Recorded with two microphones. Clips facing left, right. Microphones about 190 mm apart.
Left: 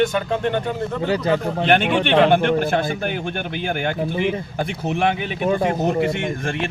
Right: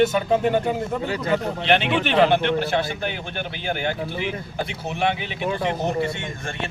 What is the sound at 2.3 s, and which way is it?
A man's voice, 50° left (ahead or behind).